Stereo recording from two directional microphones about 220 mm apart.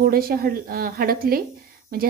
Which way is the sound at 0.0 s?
45° right (ahead or behind).